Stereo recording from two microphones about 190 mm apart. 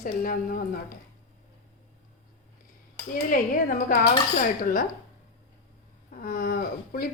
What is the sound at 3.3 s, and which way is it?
Speech, 45° left (ahead or behind).